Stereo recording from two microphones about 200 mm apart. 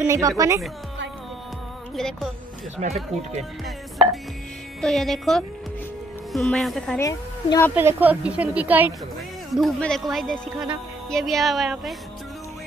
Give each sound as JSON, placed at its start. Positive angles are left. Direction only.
{"t": 0.0, "sound": "a woman's voice", "side_deg": -15}
{"t": 2.0, "sound": "speech", "side_deg": 0}
{"t": 2.8, "sound": "speech", "side_deg": -35}
{"t": 4.8, "sound": "speech", "side_deg": 0}
{"t": 7.0, "sound": "a woman's voice", "side_deg": 15}
{"t": 7.7, "sound": "a woman's voice", "side_deg": -10}